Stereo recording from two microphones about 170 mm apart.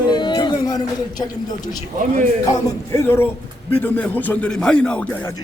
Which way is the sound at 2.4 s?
15° left (ahead or behind).